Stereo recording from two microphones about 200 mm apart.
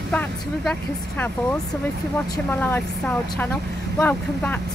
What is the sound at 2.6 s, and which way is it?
Speech, 10° left (ahead or behind).